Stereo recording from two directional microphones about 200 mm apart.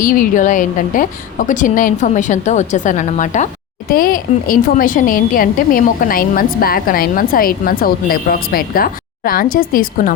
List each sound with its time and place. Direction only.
0.0 s a woman's voice: 45° left (ahead or behind)